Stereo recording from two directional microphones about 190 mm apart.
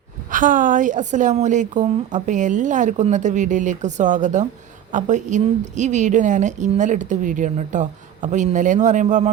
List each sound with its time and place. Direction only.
0.3 s a woman's voice: 45° right (ahead or behind)